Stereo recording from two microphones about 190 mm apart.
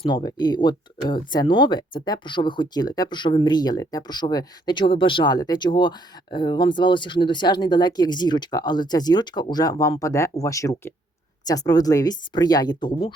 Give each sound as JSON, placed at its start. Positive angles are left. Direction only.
{"t": 0.0, "sound": "speech", "side_deg": 20}